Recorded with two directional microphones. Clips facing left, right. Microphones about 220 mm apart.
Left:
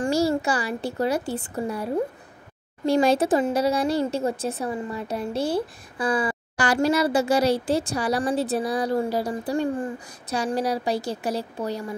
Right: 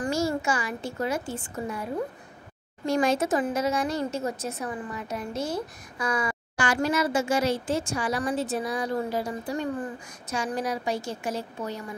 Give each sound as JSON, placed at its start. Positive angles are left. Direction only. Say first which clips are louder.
{"t": 0.0, "sound": "speech", "louder": "left 4 dB", "side_deg": 30}